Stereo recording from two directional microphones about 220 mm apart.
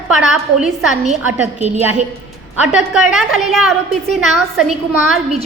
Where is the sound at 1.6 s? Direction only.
30° right (ahead or behind).